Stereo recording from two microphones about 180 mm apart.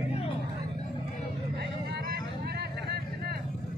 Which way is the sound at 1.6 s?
65° right (ahead or behind).